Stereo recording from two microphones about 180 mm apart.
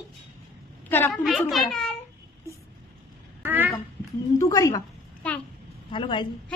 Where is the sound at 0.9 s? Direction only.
10° left (ahead or behind).